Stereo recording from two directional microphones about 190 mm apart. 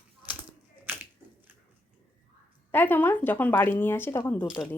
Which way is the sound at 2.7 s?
10° left (ahead or behind).